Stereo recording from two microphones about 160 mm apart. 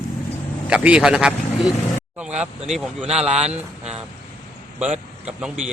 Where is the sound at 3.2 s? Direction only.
40° right (ahead or behind).